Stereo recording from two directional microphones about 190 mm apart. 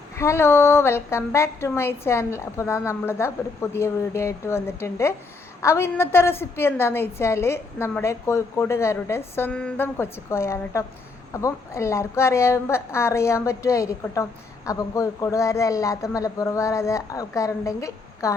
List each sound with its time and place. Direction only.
0.2 s a woman's voice: 15° left (ahead or behind)